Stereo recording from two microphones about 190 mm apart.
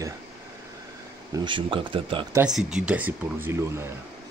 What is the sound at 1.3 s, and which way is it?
Speech, 25° right (ahead or behind).